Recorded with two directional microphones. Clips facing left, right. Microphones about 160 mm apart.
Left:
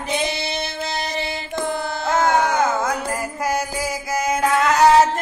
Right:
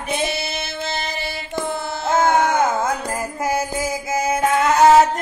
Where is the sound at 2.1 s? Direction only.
25° right (ahead or behind).